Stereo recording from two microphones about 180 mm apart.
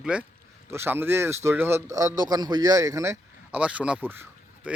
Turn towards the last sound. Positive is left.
turn(degrees=-5)  # may be behind; listen again after turning